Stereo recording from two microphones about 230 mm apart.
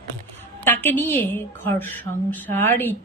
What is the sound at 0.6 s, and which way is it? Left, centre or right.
Speech, centre.